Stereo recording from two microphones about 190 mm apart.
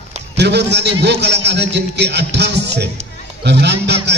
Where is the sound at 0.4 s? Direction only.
65° right (ahead or behind).